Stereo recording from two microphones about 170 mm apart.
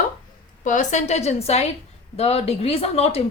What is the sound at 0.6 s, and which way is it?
A woman's voice, 45° left (ahead or behind).